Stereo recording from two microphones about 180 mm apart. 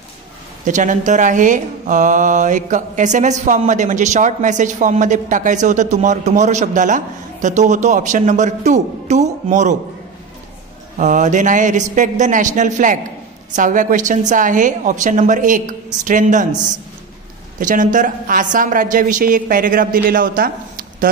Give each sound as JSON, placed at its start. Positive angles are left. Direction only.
{"t": 0.7, "sound": "a woman's voice", "side_deg": -45}
{"t": 11.0, "sound": "a woman's voice", "side_deg": -45}